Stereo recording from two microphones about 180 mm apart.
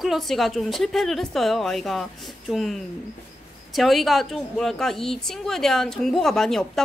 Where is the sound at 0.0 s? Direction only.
Centre (ahead or behind).